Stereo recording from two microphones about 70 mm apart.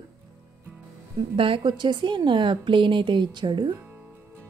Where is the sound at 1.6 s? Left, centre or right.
Right.